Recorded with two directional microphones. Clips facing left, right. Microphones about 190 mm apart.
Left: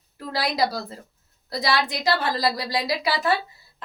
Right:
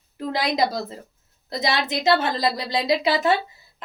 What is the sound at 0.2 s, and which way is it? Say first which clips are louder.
A woman's voice: right 2 dB; 20° right (ahead or behind).